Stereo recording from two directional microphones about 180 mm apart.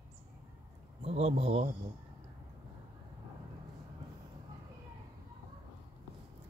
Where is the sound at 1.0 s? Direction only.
35° right (ahead or behind).